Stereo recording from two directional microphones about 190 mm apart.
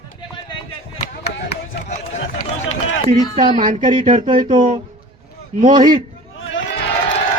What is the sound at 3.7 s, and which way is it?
Speech, 45° right (ahead or behind).